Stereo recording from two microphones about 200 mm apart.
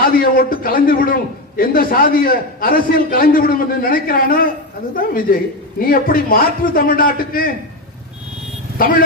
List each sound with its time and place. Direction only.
0.2 s a man's voice: 45° left (ahead or behind)
8.8 s a man's voice: 45° left (ahead or behind)